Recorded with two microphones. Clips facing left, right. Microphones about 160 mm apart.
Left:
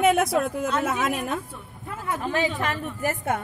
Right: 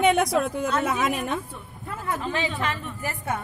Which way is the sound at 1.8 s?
10° left (ahead or behind).